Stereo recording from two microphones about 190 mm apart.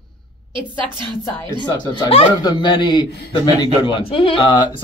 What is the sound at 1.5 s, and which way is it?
Speech, 25° left (ahead or behind).